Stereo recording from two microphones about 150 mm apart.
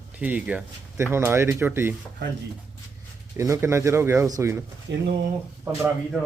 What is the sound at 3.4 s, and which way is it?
Speech, 20° right (ahead or behind).